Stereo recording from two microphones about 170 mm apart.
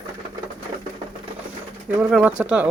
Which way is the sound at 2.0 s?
10° right (ahead or behind).